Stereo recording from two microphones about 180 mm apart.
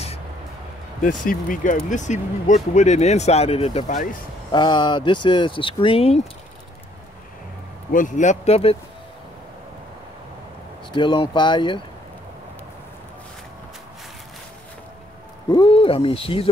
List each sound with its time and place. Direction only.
1.0 s speech: 50° left (ahead or behind)
4.5 s speech: 25° left (ahead or behind)
7.9 s speech: 45° left (ahead or behind)
10.9 s speech: 25° left (ahead or behind)
15.5 s speech: 30° left (ahead or behind)